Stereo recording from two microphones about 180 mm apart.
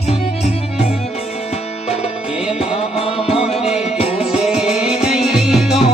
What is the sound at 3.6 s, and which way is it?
Music, 35° left (ahead or behind).